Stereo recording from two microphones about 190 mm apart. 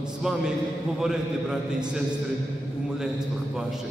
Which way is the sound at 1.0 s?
5° right (ahead or behind).